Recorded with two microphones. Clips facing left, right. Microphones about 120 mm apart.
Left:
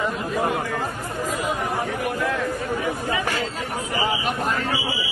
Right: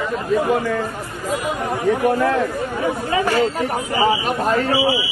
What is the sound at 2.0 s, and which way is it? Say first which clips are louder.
Speech: right 9 dB; 40° right (ahead or behind).